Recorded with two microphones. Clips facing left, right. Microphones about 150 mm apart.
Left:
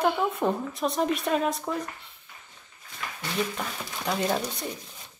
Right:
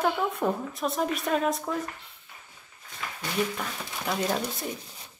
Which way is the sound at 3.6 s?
5° left (ahead or behind).